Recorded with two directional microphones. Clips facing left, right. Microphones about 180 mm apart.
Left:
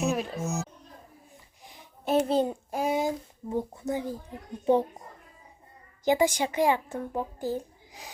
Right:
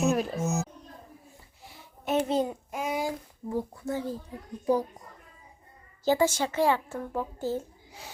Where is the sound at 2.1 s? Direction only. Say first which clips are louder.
Left 2 dB; 35° left (ahead or behind); by 4.2 s 15° left (ahead or behind).